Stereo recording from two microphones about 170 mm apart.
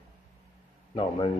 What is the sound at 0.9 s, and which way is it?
Speech, 30° left (ahead or behind).